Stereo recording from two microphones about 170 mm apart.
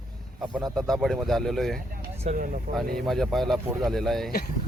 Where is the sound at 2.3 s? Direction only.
40° right (ahead or behind).